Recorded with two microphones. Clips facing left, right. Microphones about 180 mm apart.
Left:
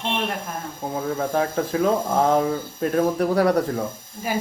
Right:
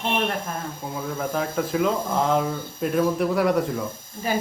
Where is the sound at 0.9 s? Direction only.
40° left (ahead or behind).